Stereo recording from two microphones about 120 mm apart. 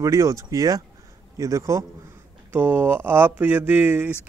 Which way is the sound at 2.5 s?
15° right (ahead or behind).